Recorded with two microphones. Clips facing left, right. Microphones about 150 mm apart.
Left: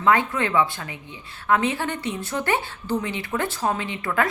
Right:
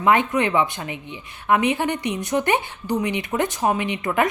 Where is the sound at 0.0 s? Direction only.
20° right (ahead or behind).